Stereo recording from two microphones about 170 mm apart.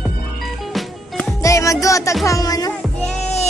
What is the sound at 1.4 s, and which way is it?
Music, 20° left (ahead or behind).